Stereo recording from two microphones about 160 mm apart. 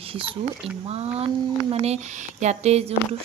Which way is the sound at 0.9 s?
40° right (ahead or behind).